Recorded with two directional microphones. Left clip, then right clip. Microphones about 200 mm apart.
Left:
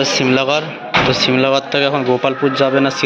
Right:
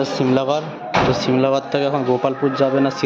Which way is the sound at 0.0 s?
10° right (ahead or behind).